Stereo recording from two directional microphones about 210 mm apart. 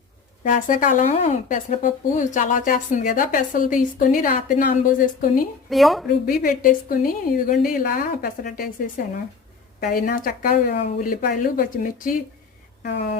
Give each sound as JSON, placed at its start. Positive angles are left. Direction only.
{"t": 0.4, "sound": "a woman's voice", "side_deg": 40}
{"t": 5.7, "sound": "speech", "side_deg": 0}
{"t": 6.2, "sound": "a woman's voice", "side_deg": 40}
{"t": 12.8, "sound": "a woman's voice", "side_deg": 50}